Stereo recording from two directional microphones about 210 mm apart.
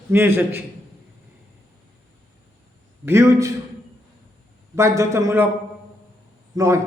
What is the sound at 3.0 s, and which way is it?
Speech, 15° right (ahead or behind).